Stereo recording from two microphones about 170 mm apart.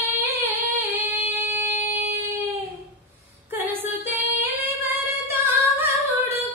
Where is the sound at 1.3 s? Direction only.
15° right (ahead or behind).